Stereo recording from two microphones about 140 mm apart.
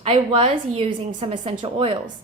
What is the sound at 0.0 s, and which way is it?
A woman's voice, 40° right (ahead or behind).